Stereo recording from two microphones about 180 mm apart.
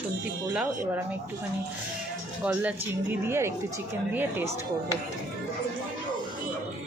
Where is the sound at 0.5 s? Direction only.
5° right (ahead or behind).